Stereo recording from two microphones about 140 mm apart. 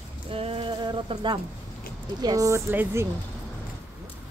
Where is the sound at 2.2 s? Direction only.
25° right (ahead or behind).